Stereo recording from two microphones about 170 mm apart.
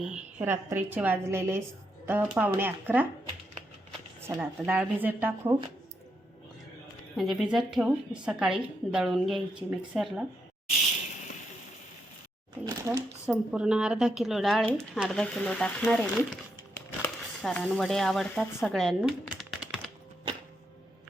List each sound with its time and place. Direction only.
0.0 s a woman's voice: 5° right (ahead or behind)
4.2 s a woman's voice: 10° right (ahead or behind)
7.2 s a woman's voice: centre (ahead or behind)
12.6 s a sound: 15° right (ahead or behind)
13.2 s a woman's voice: 5° right (ahead or behind)
15.2 s a woman's voice: 5° left (ahead or behind)